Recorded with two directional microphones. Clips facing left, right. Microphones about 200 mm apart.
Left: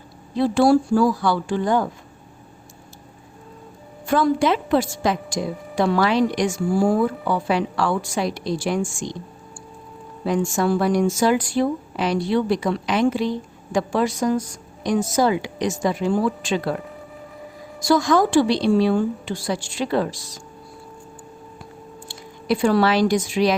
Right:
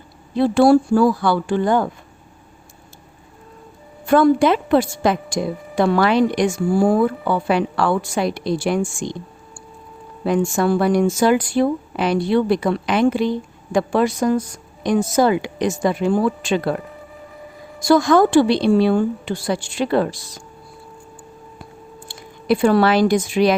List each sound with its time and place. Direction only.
0.3 s speech: 60° right (ahead or behind)
4.0 s speech: 55° right (ahead or behind)
10.2 s speech: 60° right (ahead or behind)
17.8 s speech: 60° right (ahead or behind)
22.0 s speech: 55° right (ahead or behind)